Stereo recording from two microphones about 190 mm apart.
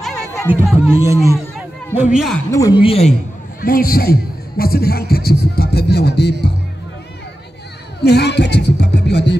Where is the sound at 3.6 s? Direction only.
50° left (ahead or behind).